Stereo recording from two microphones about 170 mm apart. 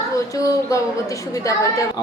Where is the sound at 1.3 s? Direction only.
20° left (ahead or behind).